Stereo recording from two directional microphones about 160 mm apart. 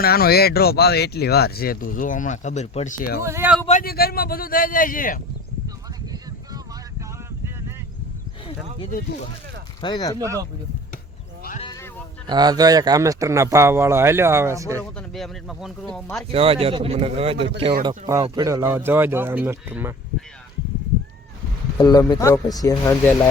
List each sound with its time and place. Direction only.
0.0 s speech: 75° left (ahead or behind)
3.2 s speech: 15° right (ahead or behind)
3.8 s a man's voice: 75° left (ahead or behind)
9.8 s speech: 25° left (ahead or behind)
10.2 s speech: 20° right (ahead or behind)
12.3 s speech: 25° right (ahead or behind)
14.9 s speech: centre (ahead or behind)
16.3 s speech: 35° right (ahead or behind)
17.8 s speech: 25° right (ahead or behind)
21.8 s speech: 25° left (ahead or behind)